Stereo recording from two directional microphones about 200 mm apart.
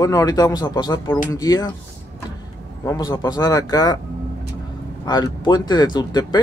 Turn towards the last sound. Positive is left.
turn(degrees=20)  # may be behind; listen again after turning